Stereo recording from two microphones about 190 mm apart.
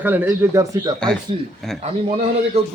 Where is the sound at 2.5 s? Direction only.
35° right (ahead or behind).